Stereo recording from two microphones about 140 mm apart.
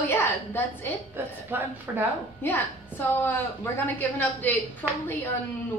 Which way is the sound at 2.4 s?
15° left (ahead or behind).